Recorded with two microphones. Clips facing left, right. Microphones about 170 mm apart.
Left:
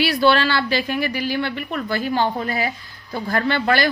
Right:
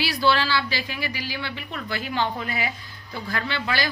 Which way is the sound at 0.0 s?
60° left (ahead or behind).